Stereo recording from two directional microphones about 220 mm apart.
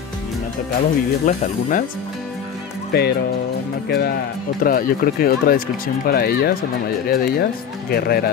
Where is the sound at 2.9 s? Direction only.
45° left (ahead or behind).